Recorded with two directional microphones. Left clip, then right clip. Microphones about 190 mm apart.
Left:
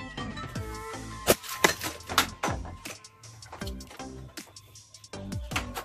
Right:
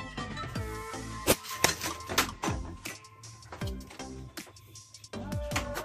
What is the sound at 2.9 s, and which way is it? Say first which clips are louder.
Music: even; centre (ahead or behind).